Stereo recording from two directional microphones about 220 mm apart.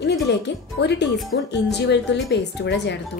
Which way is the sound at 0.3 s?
50° left (ahead or behind).